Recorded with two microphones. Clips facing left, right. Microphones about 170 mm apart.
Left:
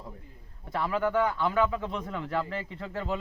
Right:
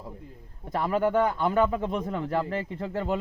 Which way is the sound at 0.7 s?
45° right (ahead or behind).